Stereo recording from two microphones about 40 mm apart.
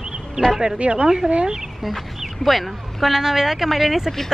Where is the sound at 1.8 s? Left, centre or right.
Centre.